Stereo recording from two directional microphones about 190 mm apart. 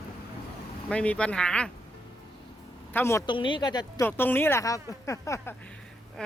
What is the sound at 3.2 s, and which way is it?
Speech, 25° left (ahead or behind).